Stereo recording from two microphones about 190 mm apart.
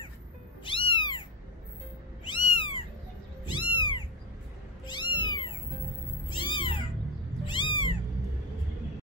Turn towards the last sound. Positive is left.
turn(degrees=25)  # may be behind; listen again after turning